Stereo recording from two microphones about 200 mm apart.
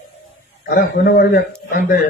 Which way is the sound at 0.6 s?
50° left (ahead or behind).